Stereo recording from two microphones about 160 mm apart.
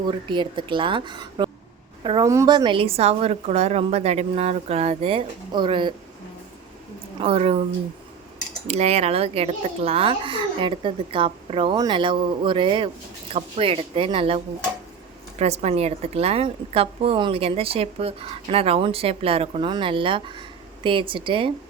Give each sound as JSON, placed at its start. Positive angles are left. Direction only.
{"t": 0.0, "sound": "a woman's voice", "side_deg": -30}
{"t": 7.2, "sound": "a woman's voice", "side_deg": -40}
{"t": 8.6, "sound": "a woman's voice", "side_deg": -40}